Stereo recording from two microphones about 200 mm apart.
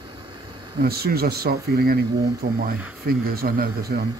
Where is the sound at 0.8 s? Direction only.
50° right (ahead or behind).